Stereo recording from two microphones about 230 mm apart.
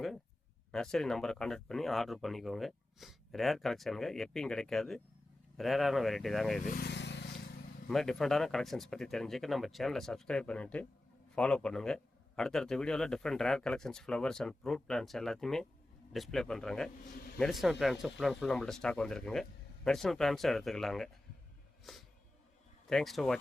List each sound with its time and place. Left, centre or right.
0.7 s a man's voice: centre
6.7 s vehicle: left
7.9 s a man's voice: centre